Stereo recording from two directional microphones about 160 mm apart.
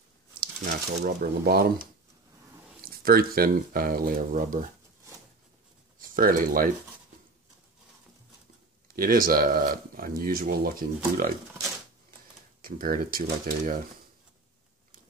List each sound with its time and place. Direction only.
0.4 s speech: 65° right (ahead or behind); by 1.7 s 80° right
2.9 s speech: 70° right (ahead or behind)
5.9 s speech: 60° right (ahead or behind)
8.8 s speech: 60° right (ahead or behind)
12.6 s speech: 65° right (ahead or behind)